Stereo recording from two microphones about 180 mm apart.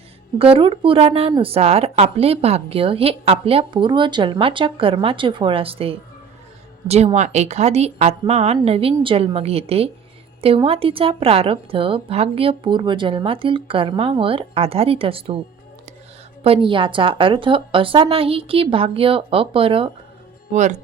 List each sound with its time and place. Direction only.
0.3 s speech: 30° right (ahead or behind)
16.4 s speech: 30° right (ahead or behind)